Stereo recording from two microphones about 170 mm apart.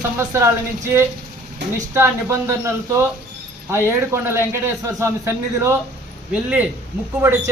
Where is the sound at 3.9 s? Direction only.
15° right (ahead or behind).